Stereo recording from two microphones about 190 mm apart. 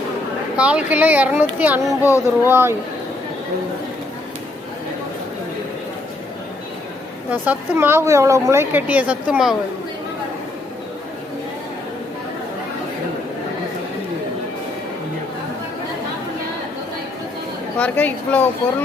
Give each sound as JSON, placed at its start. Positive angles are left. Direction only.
{"t": 0.5, "sound": "speech", "side_deg": -5}
{"t": 2.0, "sound": "a woman's voice", "side_deg": 15}
{"t": 2.4, "sound": "speech", "side_deg": -10}
{"t": 7.3, "sound": "speech", "side_deg": -10}
{"t": 17.7, "sound": "a woman's voice", "side_deg": 10}